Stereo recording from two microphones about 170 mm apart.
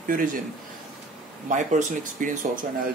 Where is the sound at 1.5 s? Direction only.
50° right (ahead or behind).